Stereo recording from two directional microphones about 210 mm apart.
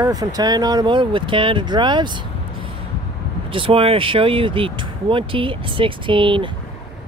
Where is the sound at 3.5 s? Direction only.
25° right (ahead or behind).